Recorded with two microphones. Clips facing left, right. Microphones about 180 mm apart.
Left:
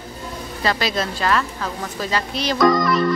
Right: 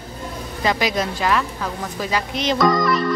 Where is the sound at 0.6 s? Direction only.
15° right (ahead or behind).